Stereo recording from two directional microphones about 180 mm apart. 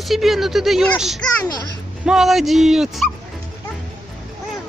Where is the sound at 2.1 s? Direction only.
Centre (ahead or behind).